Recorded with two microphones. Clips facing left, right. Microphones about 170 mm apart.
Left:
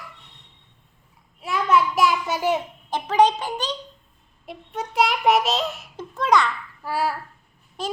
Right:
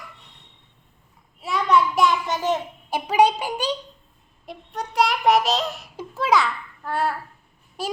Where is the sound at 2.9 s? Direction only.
10° right (ahead or behind).